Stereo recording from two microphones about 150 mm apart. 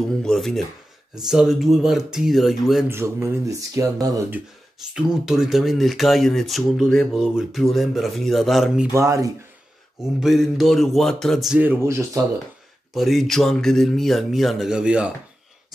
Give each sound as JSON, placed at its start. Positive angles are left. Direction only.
{"t": 0.2, "sound": "speech", "side_deg": 5}
{"t": 2.9, "sound": "speech", "side_deg": -15}
{"t": 4.9, "sound": "speech", "side_deg": -5}
{"t": 8.9, "sound": "speech", "side_deg": -20}
{"t": 10.2, "sound": "speech", "side_deg": 0}
{"t": 11.6, "sound": "speech", "side_deg": -15}
{"t": 12.9, "sound": "speech", "side_deg": 0}